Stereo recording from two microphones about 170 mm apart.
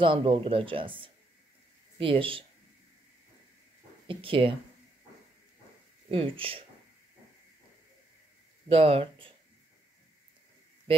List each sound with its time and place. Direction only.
0.0 s speech: 30° right (ahead or behind)
4.1 s speech: 30° right (ahead or behind)
6.0 s speech: 30° right (ahead or behind)
8.6 s speech: 35° right (ahead or behind)